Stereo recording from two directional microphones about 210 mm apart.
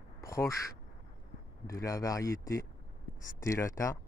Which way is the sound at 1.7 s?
15° left (ahead or behind).